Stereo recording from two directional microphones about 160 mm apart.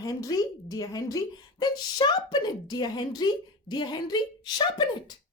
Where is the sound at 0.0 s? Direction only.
20° left (ahead or behind).